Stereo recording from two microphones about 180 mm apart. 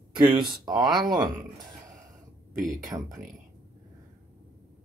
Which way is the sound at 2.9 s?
20° right (ahead or behind).